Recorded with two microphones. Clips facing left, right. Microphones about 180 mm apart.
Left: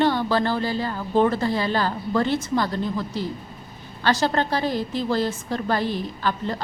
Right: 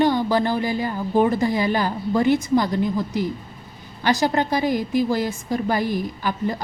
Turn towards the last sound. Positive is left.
turn(degrees=-10)  # may be behind; listen again after turning